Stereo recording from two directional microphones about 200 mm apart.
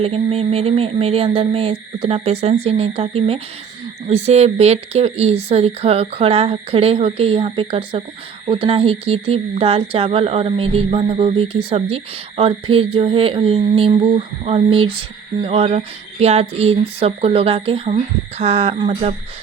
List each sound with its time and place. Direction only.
0.0 s speech: 30° right (ahead or behind)